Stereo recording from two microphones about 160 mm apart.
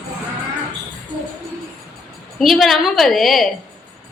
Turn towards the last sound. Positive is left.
turn(degrees=0)  # may be behind; listen again after turning